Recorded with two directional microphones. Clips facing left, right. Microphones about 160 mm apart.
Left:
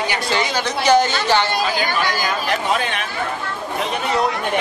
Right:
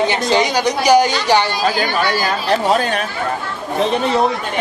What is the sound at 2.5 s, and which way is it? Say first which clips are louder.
Speech: right 8 dB; 40° right (ahead or behind).